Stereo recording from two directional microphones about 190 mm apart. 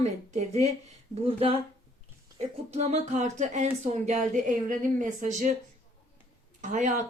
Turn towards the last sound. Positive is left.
turn(degrees=-40)  # may be behind; listen again after turning